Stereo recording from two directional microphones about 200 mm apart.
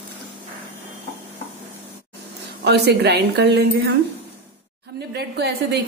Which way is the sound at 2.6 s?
55° right (ahead or behind).